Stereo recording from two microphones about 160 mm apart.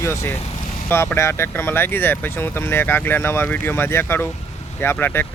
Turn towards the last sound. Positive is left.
turn(degrees=15)  # may be behind; listen again after turning